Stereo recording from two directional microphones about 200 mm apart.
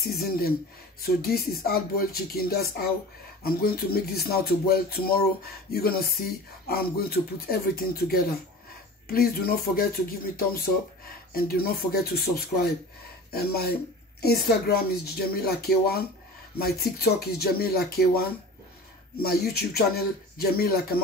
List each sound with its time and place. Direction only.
0.0 s music: 50° left (ahead or behind)
19.2 s music: 50° left (ahead or behind)